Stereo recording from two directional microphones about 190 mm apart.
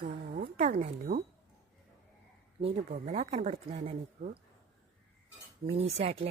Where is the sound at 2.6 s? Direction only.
35° right (ahead or behind).